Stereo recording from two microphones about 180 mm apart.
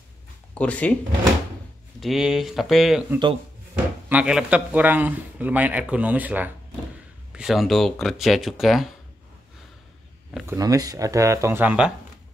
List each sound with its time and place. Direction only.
0.6 s speech: 5° left (ahead or behind)
2.0 s speech: centre (ahead or behind)
10.4 s speech: 15° right (ahead or behind)